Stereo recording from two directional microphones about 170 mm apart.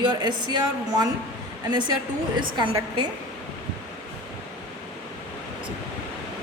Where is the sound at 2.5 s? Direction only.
25° right (ahead or behind).